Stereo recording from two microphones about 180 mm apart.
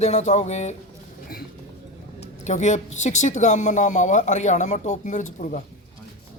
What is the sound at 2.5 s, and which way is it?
Speech, 40° left (ahead or behind).